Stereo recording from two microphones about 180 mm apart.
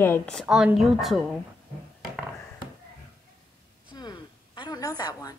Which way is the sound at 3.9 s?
25° left (ahead or behind).